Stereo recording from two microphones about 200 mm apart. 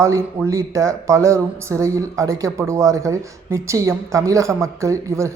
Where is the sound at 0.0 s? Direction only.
15° right (ahead or behind).